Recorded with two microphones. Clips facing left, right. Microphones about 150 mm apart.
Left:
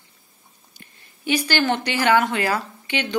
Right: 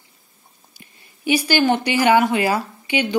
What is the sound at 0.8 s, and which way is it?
Speech, 10° right (ahead or behind).